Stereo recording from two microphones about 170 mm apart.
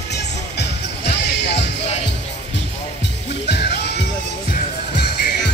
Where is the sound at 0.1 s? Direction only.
85° left.